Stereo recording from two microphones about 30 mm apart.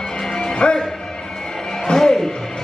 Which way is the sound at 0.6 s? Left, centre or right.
Left.